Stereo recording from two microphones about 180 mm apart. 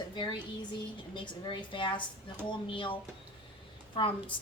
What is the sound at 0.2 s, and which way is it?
A woman's voice, 25° left (ahead or behind).